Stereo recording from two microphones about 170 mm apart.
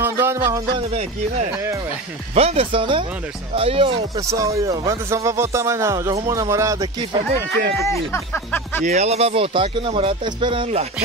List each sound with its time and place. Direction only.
0.0 s music: 15° right (ahead or behind)
1.5 s a man's voice: 15° right (ahead or behind)
2.3 s speech: 35° right (ahead or behind)
4.2 s a man's voice: 20° right (ahead or behind)
7.8 s speech: 15° left (ahead or behind)
8.8 s speech: 40° right (ahead or behind)